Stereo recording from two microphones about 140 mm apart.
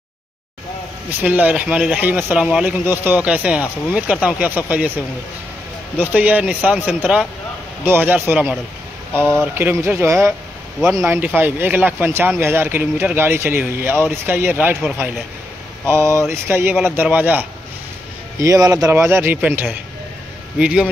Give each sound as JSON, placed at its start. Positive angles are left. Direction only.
{"t": 1.2, "sound": "speech", "side_deg": -10}
{"t": 2.4, "sound": "speech", "side_deg": -5}
{"t": 2.9, "sound": "speech", "side_deg": -15}
{"t": 5.9, "sound": "speech", "side_deg": -10}
{"t": 9.1, "sound": "speech", "side_deg": 10}
{"t": 9.6, "sound": "speech", "side_deg": -15}
{"t": 15.9, "sound": "a man's voice", "side_deg": -20}